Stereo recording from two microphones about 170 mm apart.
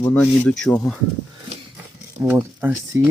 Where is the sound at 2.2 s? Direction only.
10° right (ahead or behind).